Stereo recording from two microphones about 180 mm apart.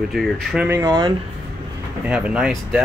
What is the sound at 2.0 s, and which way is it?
Speech, 5° right (ahead or behind).